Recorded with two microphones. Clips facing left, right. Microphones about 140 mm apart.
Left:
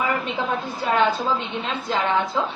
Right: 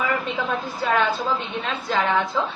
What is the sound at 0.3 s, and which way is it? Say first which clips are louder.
A woman's voice: even; 20° left (ahead or behind).